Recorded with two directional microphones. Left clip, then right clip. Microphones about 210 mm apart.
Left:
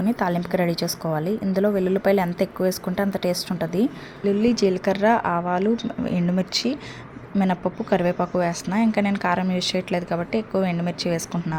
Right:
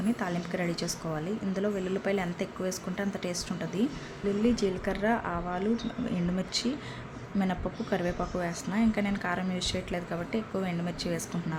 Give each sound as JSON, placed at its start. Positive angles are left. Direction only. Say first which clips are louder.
{"t": 0.2, "sound": "a woman's voice", "louder": "left 10 dB", "side_deg": 20}